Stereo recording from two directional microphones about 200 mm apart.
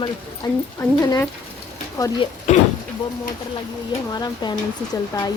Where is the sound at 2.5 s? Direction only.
35° left (ahead or behind).